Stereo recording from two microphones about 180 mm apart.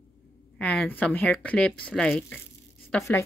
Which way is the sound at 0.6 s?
5° left (ahead or behind).